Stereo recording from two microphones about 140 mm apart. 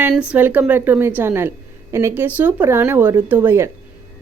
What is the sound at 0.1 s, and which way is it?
Speech, 10° right (ahead or behind).